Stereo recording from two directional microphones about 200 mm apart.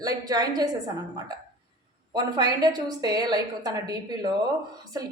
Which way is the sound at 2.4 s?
20° right (ahead or behind).